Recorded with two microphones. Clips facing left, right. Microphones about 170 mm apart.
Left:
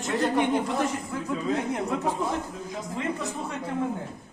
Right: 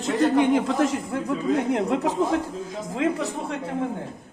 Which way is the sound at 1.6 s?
75° right (ahead or behind).